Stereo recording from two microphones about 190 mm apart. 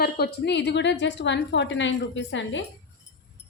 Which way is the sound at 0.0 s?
55° left (ahead or behind).